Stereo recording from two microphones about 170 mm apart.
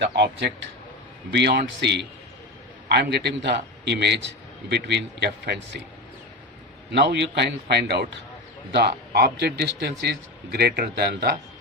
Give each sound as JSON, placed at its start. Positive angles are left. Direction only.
{"t": 0.0, "sound": "a man's voice", "side_deg": -90}
{"t": 2.9, "sound": "a man's voice", "side_deg": -75}
{"t": 6.9, "sound": "a man's voice", "side_deg": -80}